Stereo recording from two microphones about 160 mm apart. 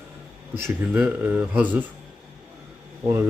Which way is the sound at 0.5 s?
10° right (ahead or behind).